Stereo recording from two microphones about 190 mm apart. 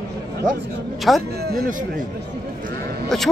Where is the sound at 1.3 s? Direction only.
55° right (ahead or behind).